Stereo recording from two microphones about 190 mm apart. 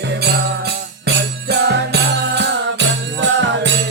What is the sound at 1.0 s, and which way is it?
Music, 60° right (ahead or behind).